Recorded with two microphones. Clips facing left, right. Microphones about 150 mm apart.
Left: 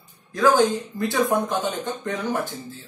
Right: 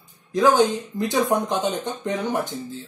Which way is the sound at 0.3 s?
20° right (ahead or behind).